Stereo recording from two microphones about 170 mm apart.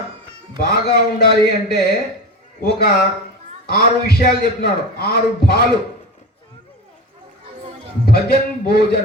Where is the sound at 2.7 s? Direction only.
65° left (ahead or behind).